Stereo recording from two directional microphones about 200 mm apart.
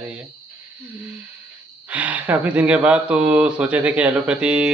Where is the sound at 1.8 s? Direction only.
5° right (ahead or behind).